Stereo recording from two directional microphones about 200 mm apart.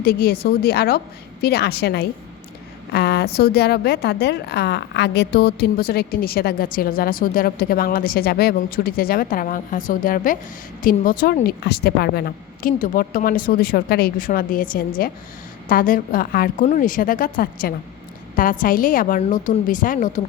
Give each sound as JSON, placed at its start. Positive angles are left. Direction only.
{"t": 0.0, "sound": "a woman's voice", "side_deg": 50}
{"t": 2.9, "sound": "a sound", "side_deg": 55}
{"t": 3.3, "sound": "a woman's voice", "side_deg": 50}